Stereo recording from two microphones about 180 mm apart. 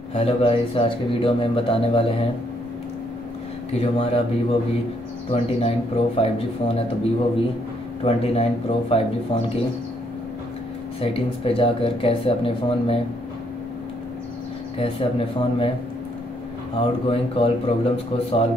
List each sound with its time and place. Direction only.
0.1 s speech: 35° left (ahead or behind)
3.7 s speech: 35° left (ahead or behind)
8.0 s speech: 35° left (ahead or behind)
11.0 s speech: 30° left (ahead or behind)
14.8 s speech: 30° left (ahead or behind)
16.7 s speech: 30° left (ahead or behind)